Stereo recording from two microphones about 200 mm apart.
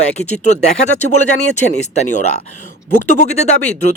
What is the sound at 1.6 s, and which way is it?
Speech, 35° left (ahead or behind).